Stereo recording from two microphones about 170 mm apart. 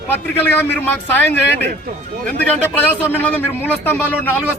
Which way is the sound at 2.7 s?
10° left (ahead or behind).